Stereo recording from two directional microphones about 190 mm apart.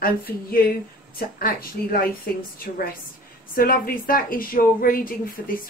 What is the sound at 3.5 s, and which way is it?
Speech, 50° left (ahead or behind).